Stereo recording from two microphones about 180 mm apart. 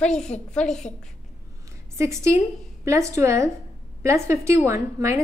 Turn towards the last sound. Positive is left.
turn(degrees=-15)  # may be behind; listen again after turning